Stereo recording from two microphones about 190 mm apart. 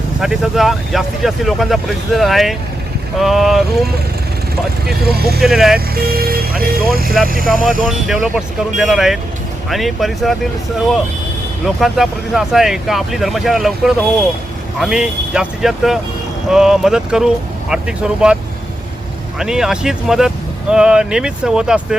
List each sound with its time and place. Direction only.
0.2 s speech: centre (ahead or behind)
5.0 s speech: 55° right (ahead or behind)
5.4 s speech: centre (ahead or behind)
5.9 s speech: 50° right (ahead or behind)
7.5 s speech: 5° right (ahead or behind)
11.6 s speech: centre (ahead or behind)
19.4 s speech: 5° right (ahead or behind)